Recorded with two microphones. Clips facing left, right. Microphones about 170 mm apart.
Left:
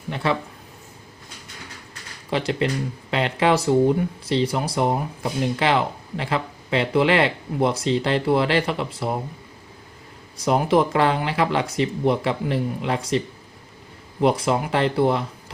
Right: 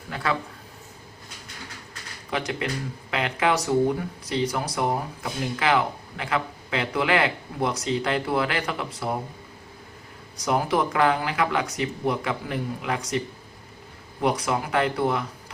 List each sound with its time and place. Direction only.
0.1 s speech: 25° left (ahead or behind)
2.3 s speech: 30° left (ahead or behind)
10.3 s speech: 25° left (ahead or behind)